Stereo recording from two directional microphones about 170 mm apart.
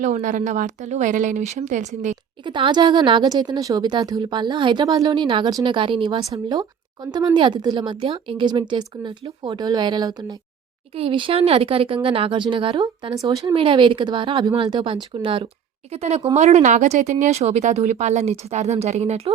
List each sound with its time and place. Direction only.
0.0 s a woman's voice: 45° right (ahead or behind)
2.4 s a woman's voice: 30° right (ahead or behind)